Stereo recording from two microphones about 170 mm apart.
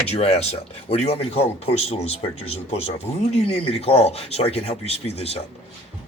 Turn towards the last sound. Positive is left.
turn(degrees=35)  # may be behind; listen again after turning